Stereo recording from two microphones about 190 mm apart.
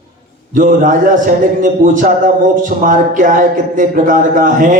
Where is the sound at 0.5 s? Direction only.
45° right (ahead or behind).